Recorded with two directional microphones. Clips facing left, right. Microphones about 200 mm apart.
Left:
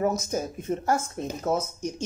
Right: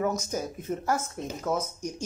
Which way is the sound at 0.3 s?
25° left (ahead or behind).